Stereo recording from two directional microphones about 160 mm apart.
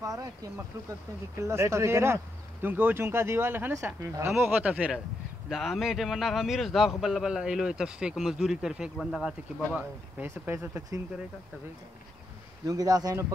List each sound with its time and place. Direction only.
0.0 s a man's voice: 20° right (ahead or behind)
12.6 s speech: 25° right (ahead or behind)